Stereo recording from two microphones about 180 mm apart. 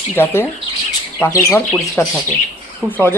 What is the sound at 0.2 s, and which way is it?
Speech, 15° left (ahead or behind).